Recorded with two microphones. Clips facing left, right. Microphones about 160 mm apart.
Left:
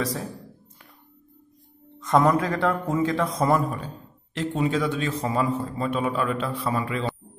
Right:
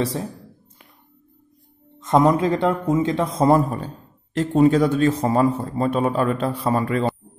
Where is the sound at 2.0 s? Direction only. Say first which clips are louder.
Right 3 dB; 20° right (ahead or behind); by 7.2 s 45° right (ahead or behind).